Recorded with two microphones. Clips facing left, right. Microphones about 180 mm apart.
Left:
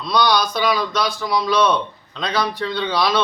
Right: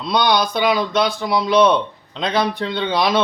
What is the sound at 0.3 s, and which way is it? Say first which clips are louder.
A man's voice: right 2 dB; 20° right (ahead or behind).